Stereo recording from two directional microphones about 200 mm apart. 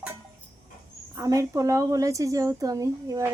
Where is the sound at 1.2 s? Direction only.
15° right (ahead or behind).